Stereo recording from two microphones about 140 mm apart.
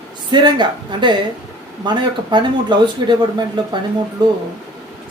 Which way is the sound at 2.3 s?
35° right (ahead or behind).